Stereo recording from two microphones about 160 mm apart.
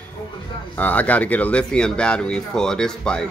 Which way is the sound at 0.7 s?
10° left (ahead or behind).